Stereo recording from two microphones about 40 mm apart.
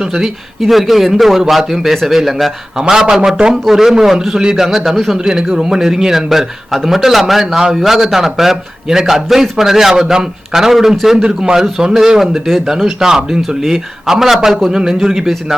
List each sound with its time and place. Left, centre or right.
0.6 s a man's voice: centre
2.7 s a man's voice: centre
5.1 s a man's voice: centre
11.2 s a man's voice: centre
12.3 s a man's voice: centre
13.6 s a man's voice: centre